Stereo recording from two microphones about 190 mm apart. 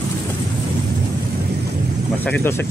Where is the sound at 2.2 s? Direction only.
10° left (ahead or behind).